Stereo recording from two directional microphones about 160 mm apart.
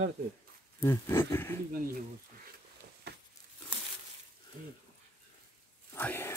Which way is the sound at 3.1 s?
90° right.